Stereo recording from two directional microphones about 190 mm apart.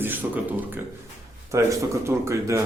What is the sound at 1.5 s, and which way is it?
A man's voice, 15° right (ahead or behind).